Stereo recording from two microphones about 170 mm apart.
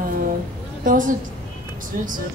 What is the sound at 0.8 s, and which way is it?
Speech, 50° right (ahead or behind).